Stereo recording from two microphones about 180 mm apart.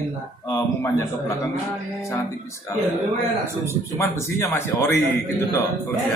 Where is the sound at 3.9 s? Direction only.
15° left (ahead or behind).